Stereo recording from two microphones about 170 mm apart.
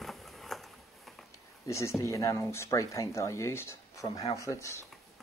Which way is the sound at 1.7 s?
15° left (ahead or behind).